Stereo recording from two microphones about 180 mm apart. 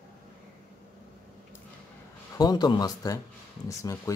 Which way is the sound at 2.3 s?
20° left (ahead or behind).